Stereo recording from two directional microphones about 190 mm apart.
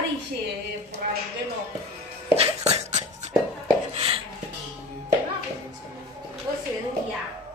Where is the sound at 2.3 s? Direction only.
35° right (ahead or behind).